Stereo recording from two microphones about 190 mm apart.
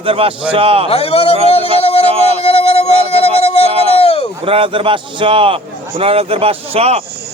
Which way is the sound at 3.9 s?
30° left (ahead or behind).